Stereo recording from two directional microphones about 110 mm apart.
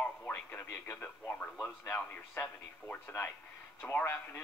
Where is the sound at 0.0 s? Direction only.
15° left (ahead or behind).